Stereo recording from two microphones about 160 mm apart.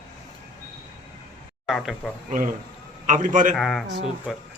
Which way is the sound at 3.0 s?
55° right (ahead or behind).